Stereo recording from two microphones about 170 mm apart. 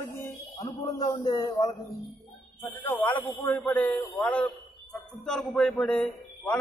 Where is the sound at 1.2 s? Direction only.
25° left (ahead or behind).